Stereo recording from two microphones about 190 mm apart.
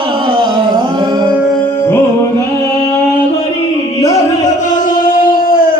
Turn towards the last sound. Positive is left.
turn(degrees=45)  # may be behind; listen again after turning